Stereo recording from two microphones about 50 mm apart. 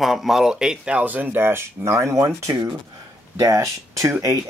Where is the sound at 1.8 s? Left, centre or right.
Right.